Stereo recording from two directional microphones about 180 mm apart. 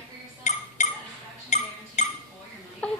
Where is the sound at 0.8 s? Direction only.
40° left (ahead or behind).